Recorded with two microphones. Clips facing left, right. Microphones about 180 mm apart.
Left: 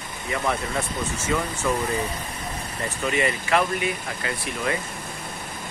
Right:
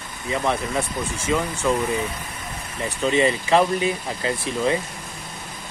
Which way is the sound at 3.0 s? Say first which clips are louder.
Right 5 dB; 25° right (ahead or behind).